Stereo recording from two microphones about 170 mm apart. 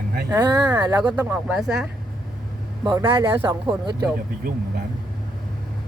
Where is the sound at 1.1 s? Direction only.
10° right (ahead or behind).